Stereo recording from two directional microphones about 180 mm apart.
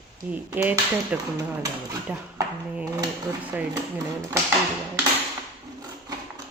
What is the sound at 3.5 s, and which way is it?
Speech, 10° right (ahead or behind).